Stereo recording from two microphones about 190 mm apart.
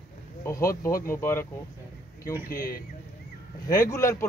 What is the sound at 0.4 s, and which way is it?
A man's voice, 15° left (ahead or behind).